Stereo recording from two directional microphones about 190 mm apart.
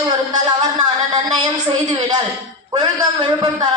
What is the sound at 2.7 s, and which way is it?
Speech, 20° right (ahead or behind).